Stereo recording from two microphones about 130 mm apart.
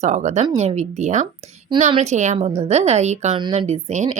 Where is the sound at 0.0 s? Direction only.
65° right (ahead or behind).